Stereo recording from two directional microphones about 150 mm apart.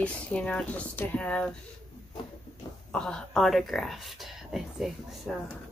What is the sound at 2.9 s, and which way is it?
Speech, 5° left (ahead or behind).